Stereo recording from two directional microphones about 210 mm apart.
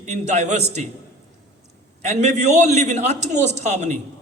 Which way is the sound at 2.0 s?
35° right (ahead or behind).